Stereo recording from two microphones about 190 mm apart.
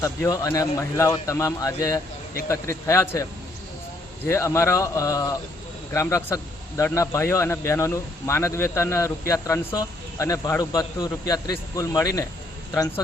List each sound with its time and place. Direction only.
0.0 s a man's voice: 15° left (ahead or behind)
4.3 s a man's voice: 15° left (ahead or behind)